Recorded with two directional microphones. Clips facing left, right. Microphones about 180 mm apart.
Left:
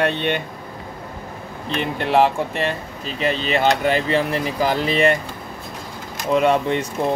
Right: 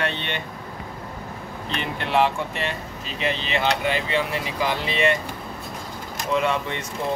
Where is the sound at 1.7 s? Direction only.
40° left (ahead or behind).